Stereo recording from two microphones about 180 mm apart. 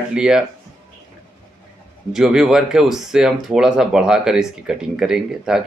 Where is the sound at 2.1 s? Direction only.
5° right (ahead or behind).